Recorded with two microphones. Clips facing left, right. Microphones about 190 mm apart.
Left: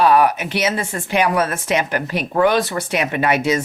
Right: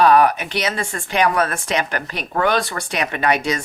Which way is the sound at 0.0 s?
5° left (ahead or behind).